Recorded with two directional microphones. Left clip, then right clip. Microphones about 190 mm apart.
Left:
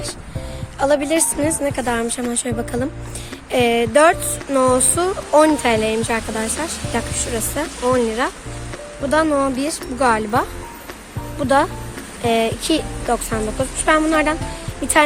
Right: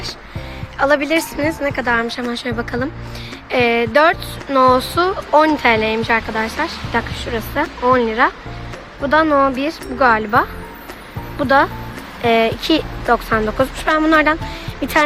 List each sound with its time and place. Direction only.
0.8 s fowl: 15° left (ahead or behind)